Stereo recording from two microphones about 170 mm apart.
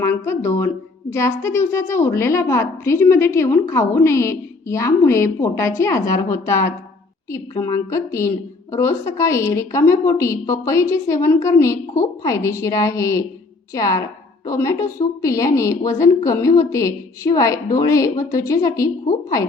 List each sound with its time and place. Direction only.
0.0 s a woman's voice: 15° left (ahead or behind)